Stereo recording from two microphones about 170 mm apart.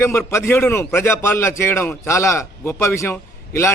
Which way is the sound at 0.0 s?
15° left (ahead or behind).